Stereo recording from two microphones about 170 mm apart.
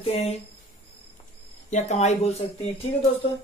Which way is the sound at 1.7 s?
45° left (ahead or behind).